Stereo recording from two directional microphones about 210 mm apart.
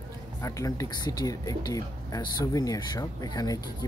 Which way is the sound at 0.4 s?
15° left (ahead or behind).